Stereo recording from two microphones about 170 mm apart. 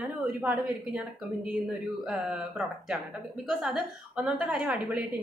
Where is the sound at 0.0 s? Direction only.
10° right (ahead or behind).